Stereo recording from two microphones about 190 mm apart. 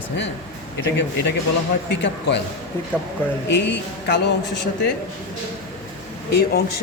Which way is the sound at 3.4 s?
70° left (ahead or behind).